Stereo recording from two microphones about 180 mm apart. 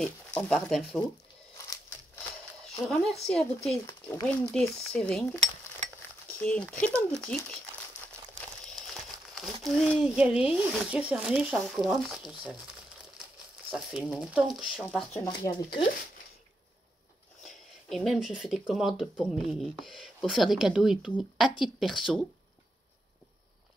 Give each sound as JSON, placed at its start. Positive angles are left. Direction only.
{"t": 0.0, "sound": "speech", "side_deg": 5}
{"t": 2.8, "sound": "speech", "side_deg": 0}
{"t": 3.8, "sound": "speech", "side_deg": 15}
{"t": 4.5, "sound": "speech", "side_deg": 5}
{"t": 8.6, "sound": "speech", "side_deg": 0}
{"t": 13.7, "sound": "speech", "side_deg": -5}
{"t": 15.4, "sound": "speech", "side_deg": 50}
{"t": 17.4, "sound": "speech", "side_deg": 0}